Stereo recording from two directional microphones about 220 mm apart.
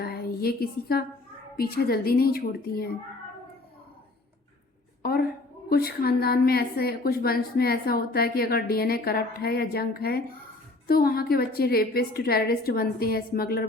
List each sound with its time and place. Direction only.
0.0 s a woman's voice: 45° left (ahead or behind)
5.6 s a woman's voice: 45° left (ahead or behind)